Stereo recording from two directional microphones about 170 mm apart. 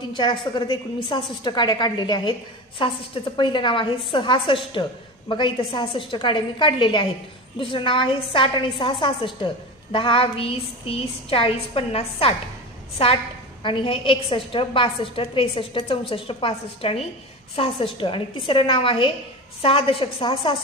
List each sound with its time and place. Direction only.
0.1 s a woman's voice: 25° left (ahead or behind)